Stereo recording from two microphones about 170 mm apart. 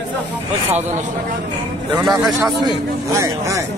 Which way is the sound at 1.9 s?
20° right (ahead or behind).